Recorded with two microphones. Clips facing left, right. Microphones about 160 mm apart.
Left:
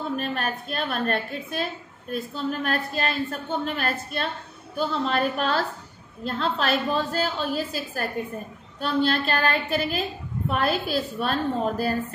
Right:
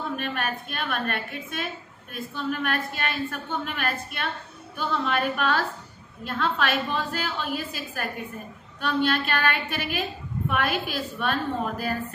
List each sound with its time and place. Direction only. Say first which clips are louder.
0.2 s a woman's voice: left 1 dB; 40° left (ahead or behind)